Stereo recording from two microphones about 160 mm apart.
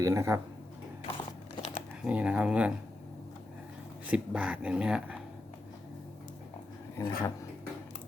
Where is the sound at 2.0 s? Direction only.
10° right (ahead or behind).